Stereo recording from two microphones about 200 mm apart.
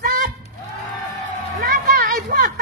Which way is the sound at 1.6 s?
50° right (ahead or behind).